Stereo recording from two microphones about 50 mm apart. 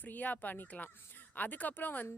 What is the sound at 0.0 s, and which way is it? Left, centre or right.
Speech, left.